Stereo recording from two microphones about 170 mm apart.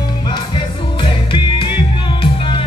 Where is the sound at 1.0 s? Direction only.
30° left (ahead or behind).